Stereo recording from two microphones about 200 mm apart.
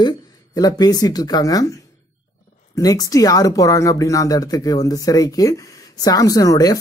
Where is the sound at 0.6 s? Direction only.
20° left (ahead or behind).